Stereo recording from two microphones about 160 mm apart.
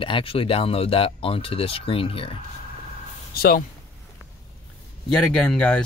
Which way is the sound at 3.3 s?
70° left (ahead or behind).